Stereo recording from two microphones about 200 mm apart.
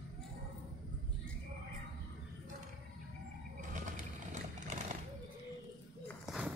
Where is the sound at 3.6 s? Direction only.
40° right (ahead or behind).